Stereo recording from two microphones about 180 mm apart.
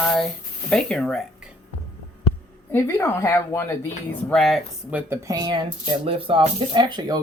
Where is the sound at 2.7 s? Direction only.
10° left (ahead or behind).